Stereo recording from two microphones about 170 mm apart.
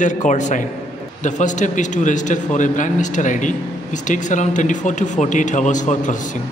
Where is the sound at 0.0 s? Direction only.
45° left (ahead or behind).